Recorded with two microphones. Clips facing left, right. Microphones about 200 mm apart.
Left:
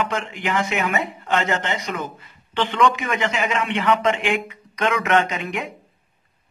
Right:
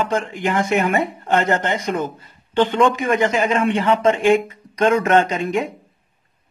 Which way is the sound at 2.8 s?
45° right (ahead or behind).